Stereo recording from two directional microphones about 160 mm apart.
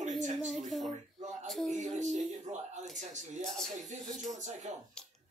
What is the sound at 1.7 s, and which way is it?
Music, 45° right (ahead or behind).